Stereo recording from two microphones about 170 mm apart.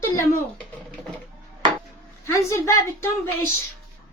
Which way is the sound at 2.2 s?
15° left (ahead or behind).